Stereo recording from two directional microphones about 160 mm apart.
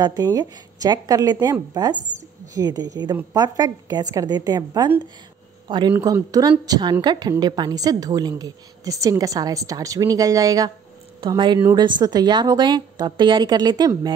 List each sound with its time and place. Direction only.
0.0 s a woman's voice: 25° right (ahead or behind)